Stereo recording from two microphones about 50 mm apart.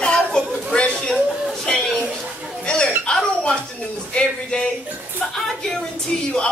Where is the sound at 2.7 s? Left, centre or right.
Left.